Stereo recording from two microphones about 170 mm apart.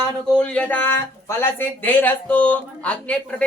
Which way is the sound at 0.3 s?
5° left (ahead or behind).